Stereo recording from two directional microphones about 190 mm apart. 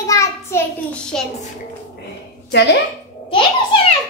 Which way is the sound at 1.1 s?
5° left (ahead or behind).